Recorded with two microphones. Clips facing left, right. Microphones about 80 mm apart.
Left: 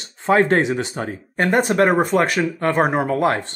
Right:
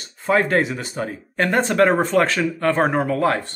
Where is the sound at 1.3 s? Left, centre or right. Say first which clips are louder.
Left 1 dB; centre.